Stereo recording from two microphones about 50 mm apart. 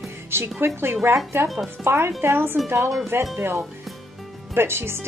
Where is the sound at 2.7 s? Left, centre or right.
Right.